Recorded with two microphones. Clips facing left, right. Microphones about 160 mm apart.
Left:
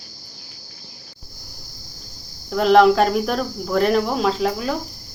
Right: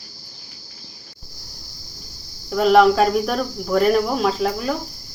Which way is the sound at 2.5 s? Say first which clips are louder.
Even; centre (ahead or behind).